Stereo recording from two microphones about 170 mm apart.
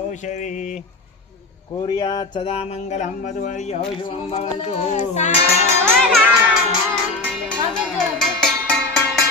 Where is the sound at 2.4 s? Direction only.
35° left (ahead or behind).